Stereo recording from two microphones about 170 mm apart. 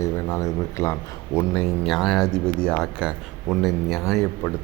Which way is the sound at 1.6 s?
Centre (ahead or behind).